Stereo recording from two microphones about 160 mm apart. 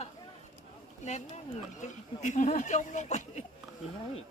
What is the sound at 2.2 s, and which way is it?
Speech, 50° left (ahead or behind).